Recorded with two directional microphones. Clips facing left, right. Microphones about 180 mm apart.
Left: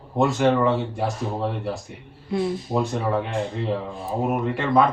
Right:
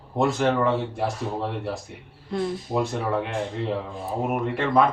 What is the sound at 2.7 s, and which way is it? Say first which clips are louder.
Speech: left 1 dB; centre (ahead or behind).